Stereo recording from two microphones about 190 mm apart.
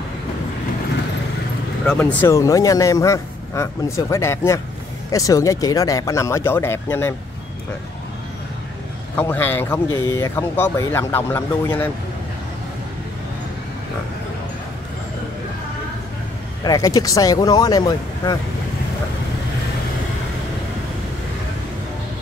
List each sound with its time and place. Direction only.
1.9 s a man's voice: 10° left (ahead or behind)
9.1 s a man's voice: 10° left (ahead or behind)
16.6 s speech: 20° left (ahead or behind)